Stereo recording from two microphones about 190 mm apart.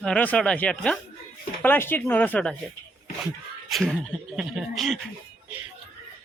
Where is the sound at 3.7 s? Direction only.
Centre (ahead or behind).